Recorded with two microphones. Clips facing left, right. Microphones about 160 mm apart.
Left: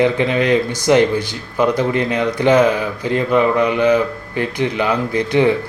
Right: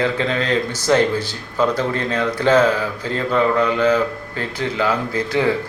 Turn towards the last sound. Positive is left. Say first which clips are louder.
# left 4 dB
turn(degrees=15)  # may be behind; listen again after turning